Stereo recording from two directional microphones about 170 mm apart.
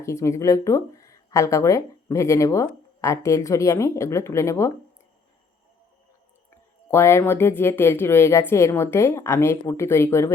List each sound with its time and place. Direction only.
0.0 s speech: 20° left (ahead or behind)
6.5 s speech: 15° left (ahead or behind)